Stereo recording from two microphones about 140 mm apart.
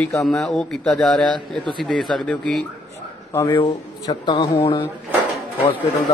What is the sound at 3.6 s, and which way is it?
Speech, 30° left (ahead or behind).